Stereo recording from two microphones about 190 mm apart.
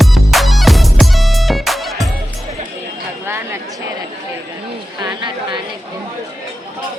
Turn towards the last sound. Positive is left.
turn(degrees=-25)  # may be behind; listen again after turning